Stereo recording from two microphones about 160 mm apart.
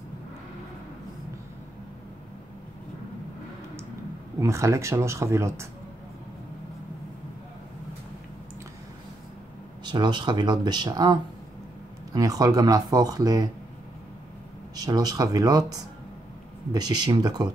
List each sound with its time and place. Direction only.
4.4 s speech: 20° right (ahead or behind)
9.8 s speech: 30° right (ahead or behind)
14.8 s speech: 25° right (ahead or behind)